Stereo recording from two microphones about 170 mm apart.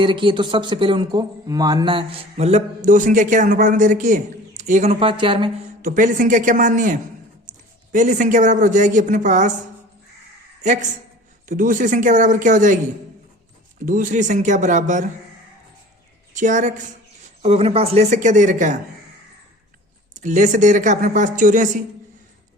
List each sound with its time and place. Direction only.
0.0 s speech: 30° right (ahead or behind)
5.8 s speech: 50° right (ahead or behind)
7.9 s speech: 45° right (ahead or behind)
10.6 s speech: 45° right (ahead or behind)
13.8 s speech: 50° right (ahead or behind)
16.3 s speech: 45° right (ahead or behind)
20.1 s speech: 45° right (ahead or behind)